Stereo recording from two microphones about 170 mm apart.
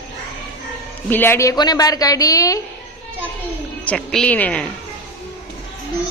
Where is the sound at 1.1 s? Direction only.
15° left (ahead or behind).